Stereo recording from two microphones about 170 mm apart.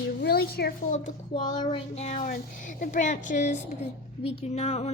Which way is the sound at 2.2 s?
50° left (ahead or behind).